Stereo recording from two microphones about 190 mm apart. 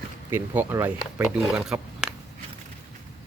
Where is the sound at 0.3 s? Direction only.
10° right (ahead or behind).